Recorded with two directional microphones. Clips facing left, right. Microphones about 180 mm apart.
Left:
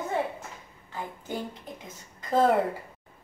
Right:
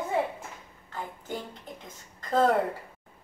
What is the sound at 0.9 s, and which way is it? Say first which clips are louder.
A woman's voice: left 2 dB; 10° left (ahead or behind).